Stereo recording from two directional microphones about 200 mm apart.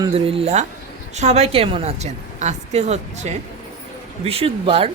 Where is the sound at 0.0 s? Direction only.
25° right (ahead or behind).